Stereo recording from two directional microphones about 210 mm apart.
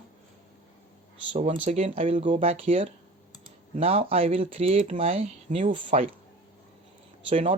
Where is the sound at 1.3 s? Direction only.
25° right (ahead or behind).